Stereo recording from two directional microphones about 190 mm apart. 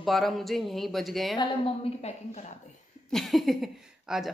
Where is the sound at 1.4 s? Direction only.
30° left (ahead or behind).